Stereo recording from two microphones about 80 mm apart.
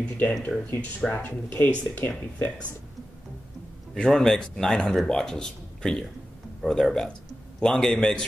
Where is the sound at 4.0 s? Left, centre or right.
Centre.